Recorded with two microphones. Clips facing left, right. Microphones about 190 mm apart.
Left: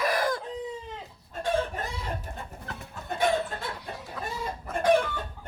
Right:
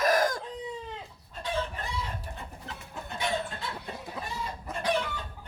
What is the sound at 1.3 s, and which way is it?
Chicken, 50° left (ahead or behind).